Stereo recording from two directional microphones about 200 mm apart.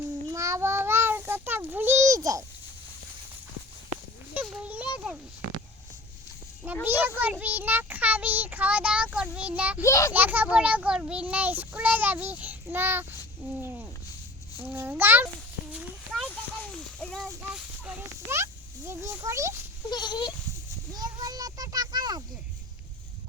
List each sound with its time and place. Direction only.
0.3 s child singing: 15° right (ahead or behind)
4.4 s a sound: 10° right (ahead or behind)
6.8 s a child's voice: 10° right (ahead or behind)
9.8 s a child's voice: 15° left (ahead or behind)
10.1 s a child's voice: 10° right (ahead or behind)
14.6 s a child's voice: 10° right (ahead or behind)
15.7 s a sound: 5° right (ahead or behind)
18.9 s a child's voice: 15° right (ahead or behind)
19.9 s speech: 20° left (ahead or behind)
20.9 s children playing: 20° right (ahead or behind)